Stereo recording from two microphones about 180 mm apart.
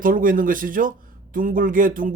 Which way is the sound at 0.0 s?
50° right (ahead or behind).